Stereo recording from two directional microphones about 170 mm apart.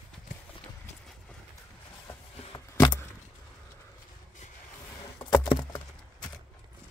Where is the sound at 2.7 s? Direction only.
15° left (ahead or behind).